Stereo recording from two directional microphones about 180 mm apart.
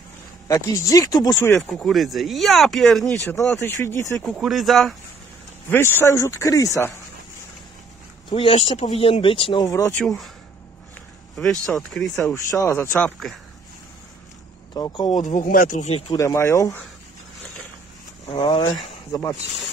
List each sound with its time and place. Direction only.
0.5 s speech: 15° left (ahead or behind)
1.6 s speech: centre (ahead or behind)
3.5 s speech: 15° left (ahead or behind)
4.4 s speech: centre (ahead or behind)
5.7 s speech: 15° left (ahead or behind)
8.3 s speech: 30° left (ahead or behind)
9.9 s speech: centre (ahead or behind)
11.3 s speech: centre (ahead or behind)
12.4 s speech: 15° left (ahead or behind)
12.9 s speech: centre (ahead or behind)
14.7 s speech: 20° left (ahead or behind)
15.2 s speech: 50° left (ahead or behind)
16.2 s speech: 15° left (ahead or behind)
18.2 s speech: 25° left (ahead or behind)